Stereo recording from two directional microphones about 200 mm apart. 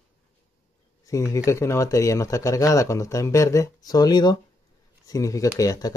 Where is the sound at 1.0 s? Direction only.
15° left (ahead or behind).